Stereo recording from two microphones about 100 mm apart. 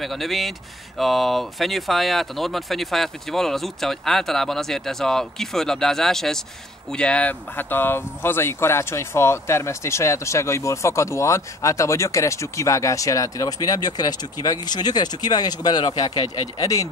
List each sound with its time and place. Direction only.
0.0 s speech: centre (ahead or behind); by 16.9 s 35° left (ahead or behind)